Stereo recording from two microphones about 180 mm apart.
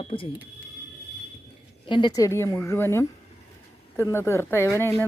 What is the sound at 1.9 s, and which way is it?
A woman's voice, 25° left (ahead or behind).